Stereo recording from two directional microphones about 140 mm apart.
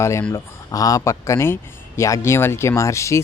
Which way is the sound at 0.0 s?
20° left (ahead or behind).